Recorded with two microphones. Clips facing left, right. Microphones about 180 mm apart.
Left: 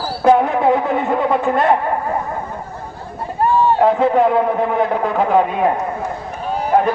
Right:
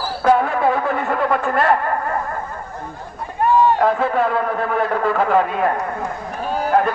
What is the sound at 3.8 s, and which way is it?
A man's voice, 15° left (ahead or behind).